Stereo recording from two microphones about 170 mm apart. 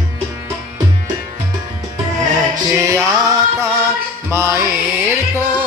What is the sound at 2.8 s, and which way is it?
Music, 20° right (ahead or behind).